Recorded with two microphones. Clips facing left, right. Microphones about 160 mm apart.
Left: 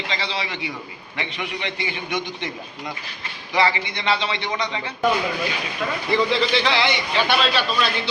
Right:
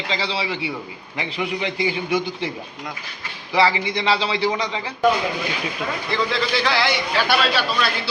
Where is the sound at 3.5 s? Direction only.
30° right (ahead or behind).